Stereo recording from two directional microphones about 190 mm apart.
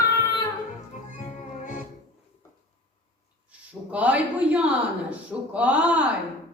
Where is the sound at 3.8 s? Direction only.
5° right (ahead or behind).